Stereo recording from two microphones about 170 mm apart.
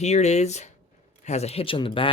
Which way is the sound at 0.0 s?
40° left (ahead or behind).